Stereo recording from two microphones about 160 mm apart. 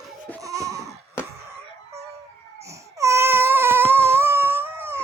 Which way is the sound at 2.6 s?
20° right (ahead or behind).